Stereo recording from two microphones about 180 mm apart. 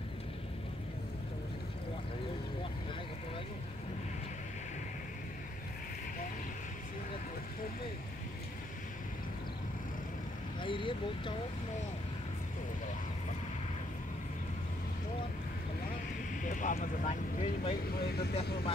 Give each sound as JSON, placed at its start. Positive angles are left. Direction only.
{"t": 10.6, "sound": "vehicle", "side_deg": 30}
{"t": 16.4, "sound": "vehicle", "side_deg": 45}
{"t": 17.9, "sound": "speech", "side_deg": 60}